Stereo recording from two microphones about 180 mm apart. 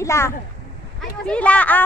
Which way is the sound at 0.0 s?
15° left (ahead or behind).